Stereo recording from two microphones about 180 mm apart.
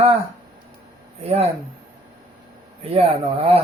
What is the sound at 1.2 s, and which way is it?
Speech, 35° right (ahead or behind).